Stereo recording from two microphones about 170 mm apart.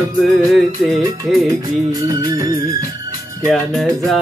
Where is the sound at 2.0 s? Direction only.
20° right (ahead or behind).